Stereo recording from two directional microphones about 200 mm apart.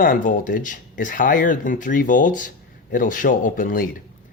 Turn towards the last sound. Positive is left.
turn(degrees=40)  # may be behind; listen again after turning